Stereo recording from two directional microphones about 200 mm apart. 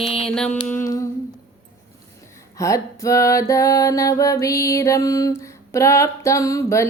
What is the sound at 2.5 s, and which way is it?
Music, 15° left (ahead or behind).